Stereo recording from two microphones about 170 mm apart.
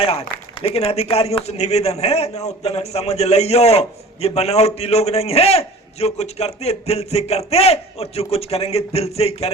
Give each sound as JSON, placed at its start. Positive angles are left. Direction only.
{"t": 0.0, "sound": "a man's voice", "side_deg": 35}